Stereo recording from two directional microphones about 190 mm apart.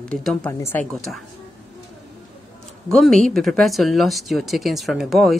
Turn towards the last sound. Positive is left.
turn(degrees=0)  # may be behind; listen again after turning